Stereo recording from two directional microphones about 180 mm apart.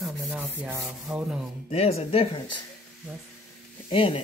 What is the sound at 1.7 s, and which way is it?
Speech, 35° left (ahead or behind).